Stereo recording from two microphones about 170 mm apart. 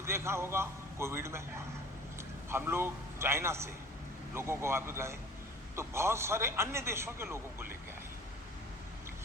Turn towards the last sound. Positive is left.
turn(degrees=-15)  # may be behind; listen again after turning